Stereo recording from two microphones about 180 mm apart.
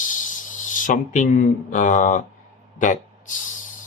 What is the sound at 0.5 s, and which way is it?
Speech, 45° left (ahead or behind).